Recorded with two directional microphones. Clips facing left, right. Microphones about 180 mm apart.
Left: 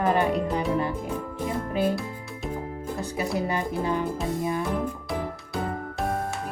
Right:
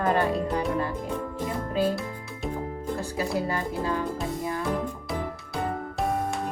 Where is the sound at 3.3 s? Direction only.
20° left (ahead or behind).